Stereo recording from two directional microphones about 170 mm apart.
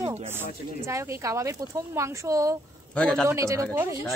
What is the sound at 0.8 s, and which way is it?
Speech, 15° right (ahead or behind).